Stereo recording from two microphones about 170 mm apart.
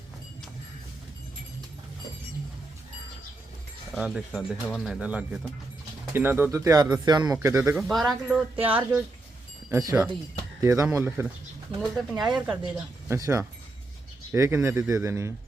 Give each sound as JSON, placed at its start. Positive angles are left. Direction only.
{"t": 3.9, "sound": "speech", "side_deg": 0}
{"t": 7.8, "sound": "speech", "side_deg": 0}
{"t": 11.8, "sound": "speech", "side_deg": -5}
{"t": 13.1, "sound": "speech", "side_deg": -20}